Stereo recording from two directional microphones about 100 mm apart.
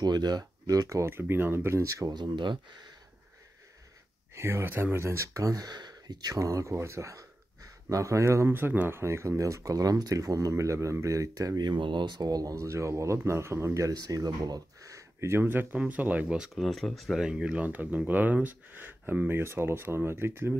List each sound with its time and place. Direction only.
0.0 s speech: 45° right (ahead or behind)
4.4 s speech: 25° right (ahead or behind)